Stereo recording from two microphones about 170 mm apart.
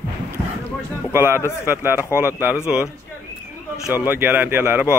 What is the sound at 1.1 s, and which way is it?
A man's voice, 15° right (ahead or behind).